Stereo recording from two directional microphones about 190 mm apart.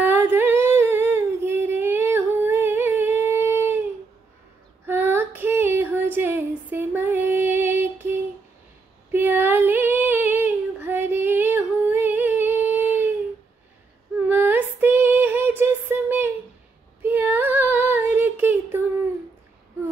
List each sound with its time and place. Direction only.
0.0 s humming: 10° right (ahead or behind)
4.8 s female singing: 10° right (ahead or behind)
9.1 s child singing: 10° right (ahead or behind)
14.3 s a sound: 10° right (ahead or behind)